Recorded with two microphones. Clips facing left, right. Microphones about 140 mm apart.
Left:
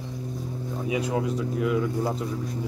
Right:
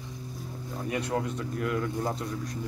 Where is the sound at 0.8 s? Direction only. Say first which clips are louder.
Left 3 dB; centre (ahead or behind).